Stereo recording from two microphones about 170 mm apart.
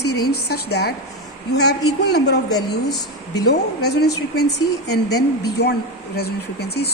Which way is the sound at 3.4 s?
80° left.